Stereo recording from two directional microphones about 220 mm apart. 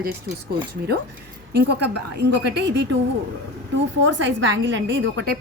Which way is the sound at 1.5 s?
50° right (ahead or behind).